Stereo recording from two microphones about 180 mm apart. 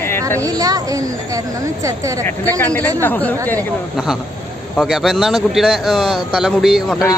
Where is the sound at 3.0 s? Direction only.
10° left (ahead or behind).